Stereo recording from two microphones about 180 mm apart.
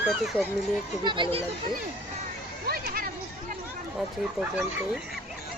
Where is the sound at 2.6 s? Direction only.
55° right (ahead or behind).